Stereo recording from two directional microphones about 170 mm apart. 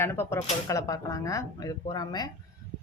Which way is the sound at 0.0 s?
15° left (ahead or behind).